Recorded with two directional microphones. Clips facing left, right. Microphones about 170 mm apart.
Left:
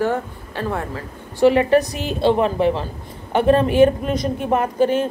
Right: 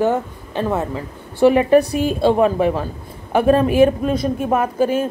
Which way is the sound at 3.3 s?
10° right (ahead or behind).